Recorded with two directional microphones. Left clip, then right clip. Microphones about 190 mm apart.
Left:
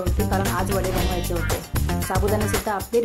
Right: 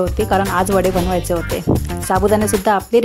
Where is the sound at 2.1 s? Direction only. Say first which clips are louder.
Right 10 dB; 45° right (ahead or behind).